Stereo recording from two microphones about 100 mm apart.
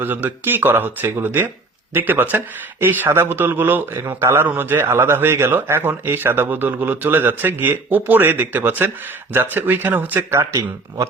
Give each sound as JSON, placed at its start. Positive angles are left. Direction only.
{"t": 0.0, "sound": "a man's voice", "side_deg": -20}